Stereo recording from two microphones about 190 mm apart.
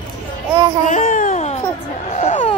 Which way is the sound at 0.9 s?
45° left (ahead or behind).